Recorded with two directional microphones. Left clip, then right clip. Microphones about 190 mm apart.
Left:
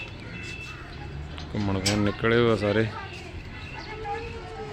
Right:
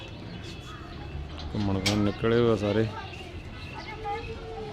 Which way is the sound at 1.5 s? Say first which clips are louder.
Left 1 dB; centre (ahead or behind).